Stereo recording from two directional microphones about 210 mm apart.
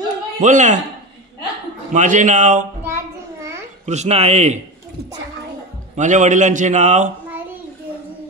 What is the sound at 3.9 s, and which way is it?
Speech, 30° right (ahead or behind).